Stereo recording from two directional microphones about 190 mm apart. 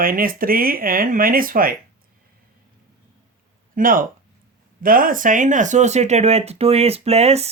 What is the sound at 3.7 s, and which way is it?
Speech, 45° right (ahead or behind).